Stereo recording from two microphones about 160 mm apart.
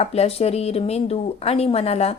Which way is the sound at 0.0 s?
40° left (ahead or behind).